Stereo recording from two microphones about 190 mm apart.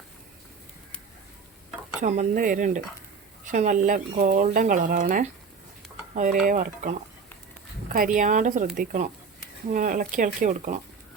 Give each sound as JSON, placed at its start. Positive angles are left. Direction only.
{"t": 2.0, "sound": "speech", "side_deg": -40}
{"t": 6.4, "sound": "speech", "side_deg": -45}
{"t": 7.9, "sound": "speech", "side_deg": -45}